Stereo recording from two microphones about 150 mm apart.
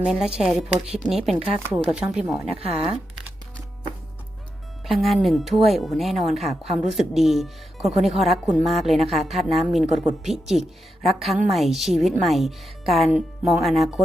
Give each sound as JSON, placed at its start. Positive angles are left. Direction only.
{"t": 0.0, "sound": "speech", "side_deg": -5}
{"t": 1.5, "sound": "speech", "side_deg": -15}
{"t": 1.8, "sound": "speech", "side_deg": -5}
{"t": 4.9, "sound": "speech", "side_deg": 0}